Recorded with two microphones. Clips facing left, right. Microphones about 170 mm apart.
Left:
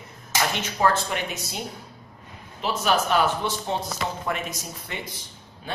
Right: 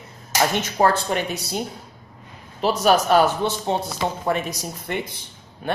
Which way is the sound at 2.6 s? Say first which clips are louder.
Right 6 dB; 40° right (ahead or behind).